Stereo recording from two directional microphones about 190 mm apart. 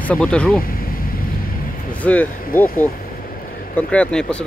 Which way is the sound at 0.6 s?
50° left (ahead or behind).